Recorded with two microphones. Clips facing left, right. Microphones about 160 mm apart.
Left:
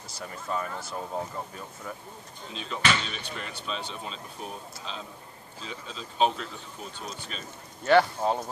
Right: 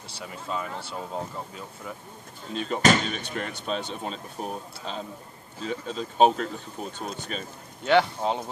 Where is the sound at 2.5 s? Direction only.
50° right (ahead or behind).